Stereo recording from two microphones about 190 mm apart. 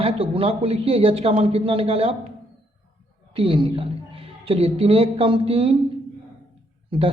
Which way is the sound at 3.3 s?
25° right (ahead or behind).